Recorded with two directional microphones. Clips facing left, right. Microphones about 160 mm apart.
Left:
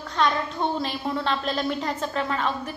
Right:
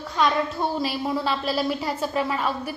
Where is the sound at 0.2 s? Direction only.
5° right (ahead or behind).